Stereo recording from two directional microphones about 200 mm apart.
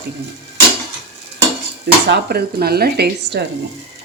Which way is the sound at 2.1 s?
50° right (ahead or behind).